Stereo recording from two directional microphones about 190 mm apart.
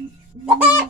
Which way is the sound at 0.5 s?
10° right (ahead or behind).